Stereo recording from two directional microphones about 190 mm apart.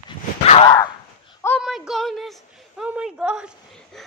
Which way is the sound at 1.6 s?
Centre (ahead or behind).